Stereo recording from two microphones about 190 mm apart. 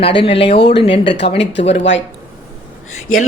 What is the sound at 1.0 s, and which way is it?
Speech, 65° left (ahead or behind).